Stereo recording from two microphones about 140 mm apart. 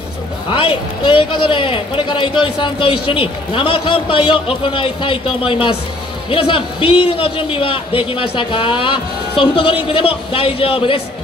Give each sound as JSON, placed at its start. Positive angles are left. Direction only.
{"t": 0.5, "sound": "a man's voice", "side_deg": 35}